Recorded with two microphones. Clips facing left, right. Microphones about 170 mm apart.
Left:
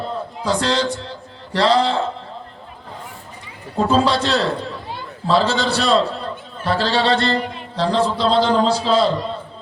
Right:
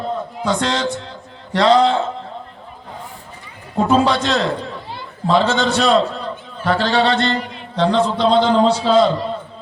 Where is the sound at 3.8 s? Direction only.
35° left (ahead or behind).